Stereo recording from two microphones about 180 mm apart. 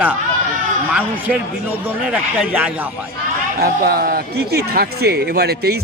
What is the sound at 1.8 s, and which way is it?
A man's voice, 5° right (ahead or behind).